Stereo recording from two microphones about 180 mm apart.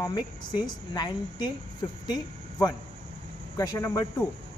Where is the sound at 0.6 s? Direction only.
25° left (ahead or behind).